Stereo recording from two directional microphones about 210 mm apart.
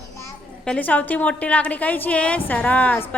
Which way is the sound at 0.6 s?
5° left (ahead or behind).